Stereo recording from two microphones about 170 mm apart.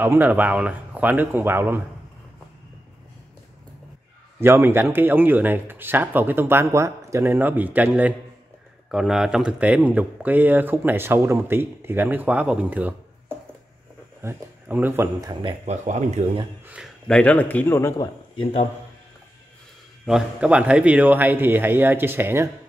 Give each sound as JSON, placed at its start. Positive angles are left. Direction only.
{"t": 0.0, "sound": "speech", "side_deg": -10}
{"t": 4.4, "sound": "speech", "side_deg": -15}
{"t": 14.2, "sound": "speech", "side_deg": -15}
{"t": 15.6, "sound": "speech", "side_deg": -45}
{"t": 17.1, "sound": "speech", "side_deg": 10}
{"t": 18.3, "sound": "speech", "side_deg": 35}
{"t": 20.1, "sound": "speech", "side_deg": -5}